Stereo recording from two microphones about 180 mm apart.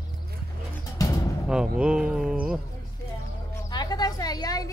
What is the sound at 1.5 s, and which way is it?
Speech, 5° right (ahead or behind).